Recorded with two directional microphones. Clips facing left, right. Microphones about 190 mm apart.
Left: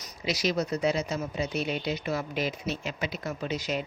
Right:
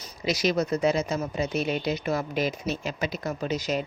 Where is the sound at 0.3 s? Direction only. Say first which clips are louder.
Right 3 dB; 50° right (ahead or behind).